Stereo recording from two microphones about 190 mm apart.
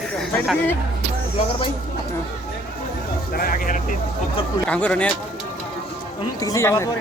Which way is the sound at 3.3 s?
50° left (ahead or behind).